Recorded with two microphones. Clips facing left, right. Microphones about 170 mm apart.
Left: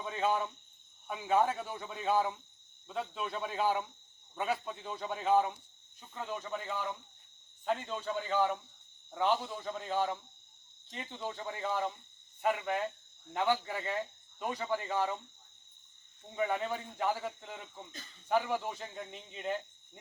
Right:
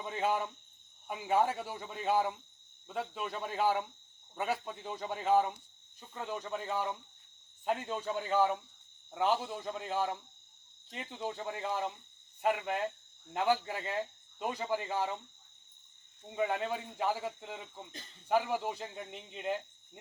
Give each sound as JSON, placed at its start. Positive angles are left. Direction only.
{"t": 0.0, "sound": "cricket", "side_deg": -10}
{"t": 1.0, "sound": "speech", "side_deg": -10}
{"t": 7.6, "sound": "speech", "side_deg": -10}
{"t": 16.3, "sound": "speech", "side_deg": -5}